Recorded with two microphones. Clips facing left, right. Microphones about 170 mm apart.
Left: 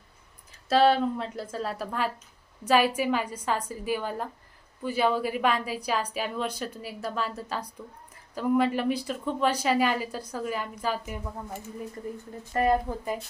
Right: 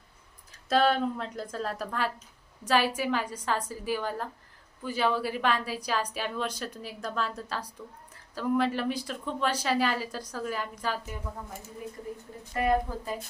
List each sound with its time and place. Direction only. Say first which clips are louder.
0.7 s a woman's voice: left 3 dB; 5° left (ahead or behind)
12.5 s a woman's voice: left 4 dB; 45° left (ahead or behind)